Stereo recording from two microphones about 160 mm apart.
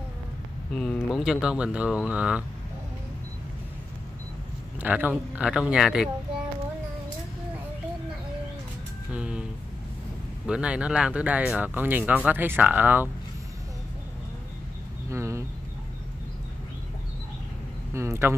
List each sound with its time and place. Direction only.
0.7 s speech: 5° left (ahead or behind)
4.7 s speech: 10° right (ahead or behind)
9.1 s a sound: 5° right (ahead or behind)
10.4 s speech: 5° right (ahead or behind)
15.0 s insect: 20° right (ahead or behind)
17.9 s speech: 15° right (ahead or behind)